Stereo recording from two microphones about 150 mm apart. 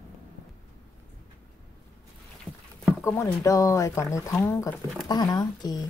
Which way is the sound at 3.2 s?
20° left (ahead or behind).